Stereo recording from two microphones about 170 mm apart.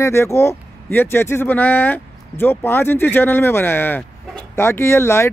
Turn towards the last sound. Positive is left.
turn(degrees=15)  # may be behind; listen again after turning